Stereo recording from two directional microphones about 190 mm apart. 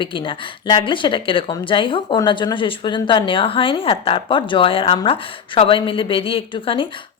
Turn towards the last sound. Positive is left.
turn(degrees=25)  # may be behind; listen again after turning